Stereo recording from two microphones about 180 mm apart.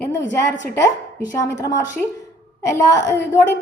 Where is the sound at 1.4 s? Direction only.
15° left (ahead or behind).